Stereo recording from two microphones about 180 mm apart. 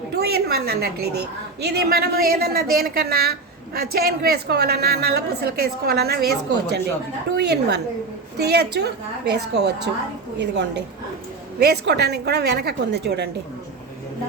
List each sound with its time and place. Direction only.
0.2 s a woman's voice: 60° right (ahead or behind)